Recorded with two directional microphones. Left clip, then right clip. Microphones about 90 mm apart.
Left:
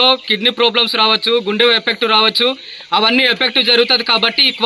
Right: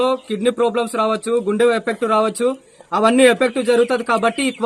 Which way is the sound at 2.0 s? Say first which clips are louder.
Left 5 dB; 20° right (ahead or behind).